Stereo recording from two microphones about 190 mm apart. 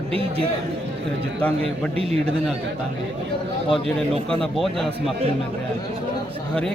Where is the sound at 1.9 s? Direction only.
30° right (ahead or behind).